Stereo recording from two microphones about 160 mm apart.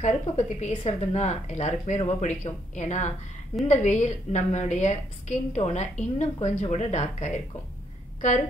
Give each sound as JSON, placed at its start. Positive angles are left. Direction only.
{"t": 0.0, "sound": "speech", "side_deg": 45}